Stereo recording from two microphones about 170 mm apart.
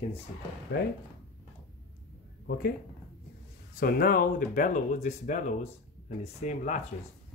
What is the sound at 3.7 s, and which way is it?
Speech, 60° left (ahead or behind).